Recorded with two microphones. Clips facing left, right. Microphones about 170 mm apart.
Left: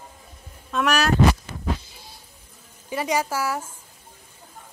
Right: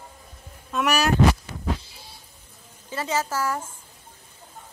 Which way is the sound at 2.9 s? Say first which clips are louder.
Left 2 dB; 15° left (ahead or behind).